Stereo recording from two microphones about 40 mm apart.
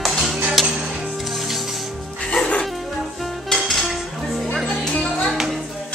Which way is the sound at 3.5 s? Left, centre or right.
Centre.